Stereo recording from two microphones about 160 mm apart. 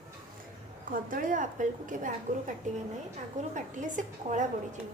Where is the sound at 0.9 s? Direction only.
60° right (ahead or behind).